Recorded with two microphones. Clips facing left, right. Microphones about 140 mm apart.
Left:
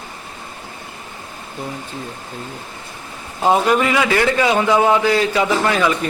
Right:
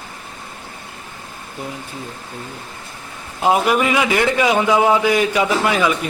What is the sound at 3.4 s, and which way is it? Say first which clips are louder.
A man's voice: left 1 dB; 10° right (ahead or behind).